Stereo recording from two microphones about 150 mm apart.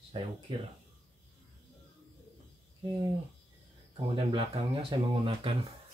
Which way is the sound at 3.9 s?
35° right (ahead or behind).